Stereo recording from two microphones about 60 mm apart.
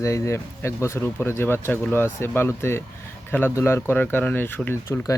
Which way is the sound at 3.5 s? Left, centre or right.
Left.